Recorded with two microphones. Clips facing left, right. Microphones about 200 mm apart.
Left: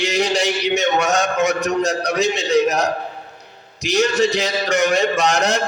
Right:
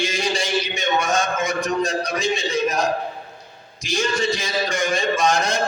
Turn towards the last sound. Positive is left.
turn(degrees=70)  # may be behind; listen again after turning